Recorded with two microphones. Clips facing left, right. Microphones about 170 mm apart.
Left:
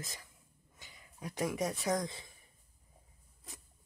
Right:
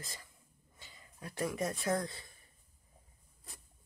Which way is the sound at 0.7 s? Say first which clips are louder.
Left 1 dB; 15° left (ahead or behind).